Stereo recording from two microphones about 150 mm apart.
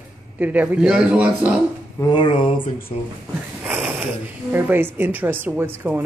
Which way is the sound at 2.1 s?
35° left (ahead or behind).